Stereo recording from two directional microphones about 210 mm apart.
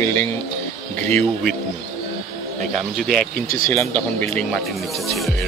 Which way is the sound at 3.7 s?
10° left (ahead or behind).